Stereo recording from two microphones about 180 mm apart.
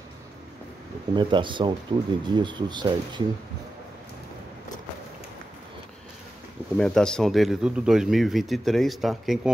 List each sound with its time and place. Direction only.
1.1 s speech: 25° right (ahead or behind)
6.8 s speech: 5° left (ahead or behind)